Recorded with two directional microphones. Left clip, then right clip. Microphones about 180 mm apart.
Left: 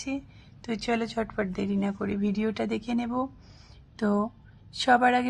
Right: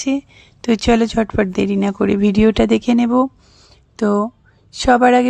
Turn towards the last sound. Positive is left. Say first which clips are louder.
# right 10 dB
turn(degrees=-40)  # may be behind; listen again after turning